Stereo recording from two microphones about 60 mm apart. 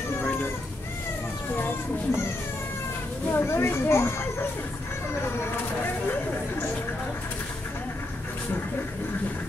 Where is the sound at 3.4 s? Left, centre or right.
Left.